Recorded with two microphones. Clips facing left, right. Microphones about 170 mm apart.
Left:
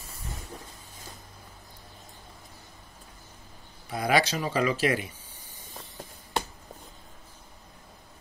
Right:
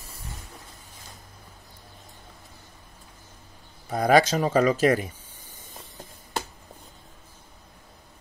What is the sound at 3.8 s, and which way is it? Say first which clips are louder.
Speech: right 6 dB; 45° right (ahead or behind).